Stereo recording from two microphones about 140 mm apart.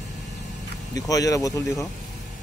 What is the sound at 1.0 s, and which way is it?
Speech, 25° left (ahead or behind).